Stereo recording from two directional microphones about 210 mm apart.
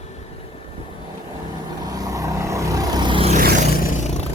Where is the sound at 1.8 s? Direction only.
20° right (ahead or behind).